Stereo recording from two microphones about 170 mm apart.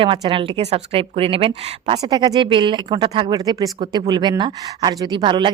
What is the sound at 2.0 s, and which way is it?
Speech, 20° right (ahead or behind).